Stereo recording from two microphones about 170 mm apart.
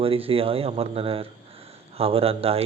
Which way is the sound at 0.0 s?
35° right (ahead or behind).